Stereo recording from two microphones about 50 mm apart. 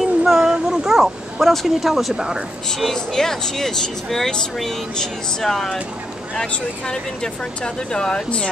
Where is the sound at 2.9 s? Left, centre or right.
Centre.